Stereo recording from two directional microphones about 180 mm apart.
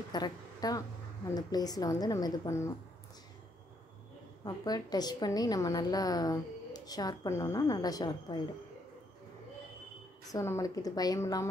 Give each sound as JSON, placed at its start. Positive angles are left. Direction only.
{"t": 0.1, "sound": "a sound", "side_deg": 20}
{"t": 1.3, "sound": "a woman's voice", "side_deg": 20}
{"t": 4.5, "sound": "a woman's voice", "side_deg": 20}
{"t": 10.2, "sound": "a woman's voice", "side_deg": 15}